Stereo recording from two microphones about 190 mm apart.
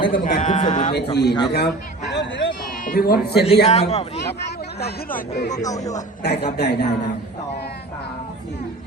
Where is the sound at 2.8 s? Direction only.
50° left (ahead or behind).